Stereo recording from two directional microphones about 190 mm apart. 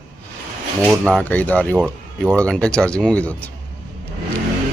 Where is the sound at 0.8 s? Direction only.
5° left (ahead or behind).